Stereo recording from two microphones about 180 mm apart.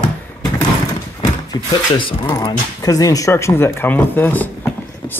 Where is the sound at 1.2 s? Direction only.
25° left (ahead or behind).